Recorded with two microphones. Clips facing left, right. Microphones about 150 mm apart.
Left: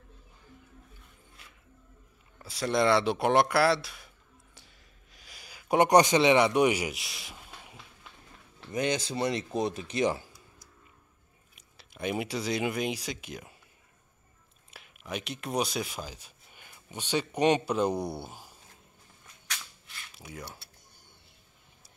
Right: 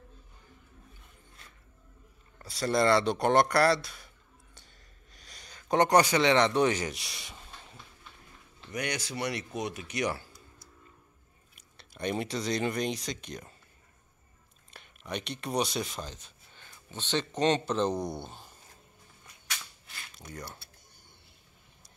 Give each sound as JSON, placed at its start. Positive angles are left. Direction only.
{"t": 2.3, "sound": "speech", "side_deg": 0}
{"t": 5.1, "sound": "speech", "side_deg": 5}
{"t": 8.7, "sound": "speech", "side_deg": 25}
{"t": 11.5, "sound": "speech", "side_deg": 0}
{"t": 14.7, "sound": "speech", "side_deg": 5}
{"t": 20.2, "sound": "speech", "side_deg": 5}